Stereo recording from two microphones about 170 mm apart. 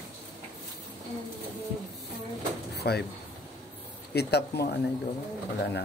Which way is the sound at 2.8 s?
70° left (ahead or behind).